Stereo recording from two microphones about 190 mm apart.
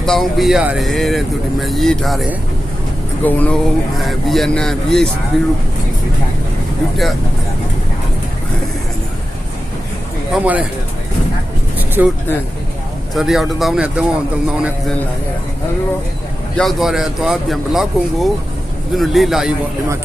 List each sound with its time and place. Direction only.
0.0 s speech: centre (ahead or behind)
3.2 s speech: 10° left (ahead or behind)
6.9 s speech: centre (ahead or behind)
10.3 s speech: 5° right (ahead or behind)
12.0 s speech: 10° right (ahead or behind)
13.1 s speech: centre (ahead or behind)
16.6 s speech: centre (ahead or behind)